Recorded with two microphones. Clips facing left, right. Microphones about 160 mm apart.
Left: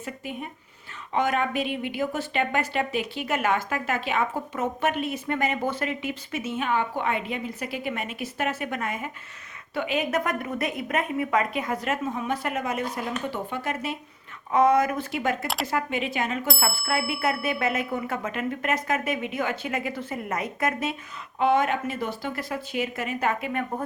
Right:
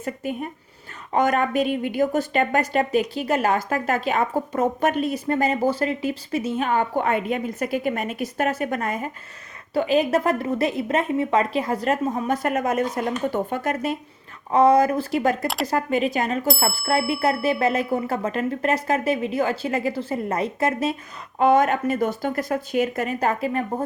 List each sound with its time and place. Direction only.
0.0 s a woman's voice: 45° right (ahead or behind)
14.5 s a woman's voice: 35° right (ahead or behind)
21.3 s speech: 45° right (ahead or behind)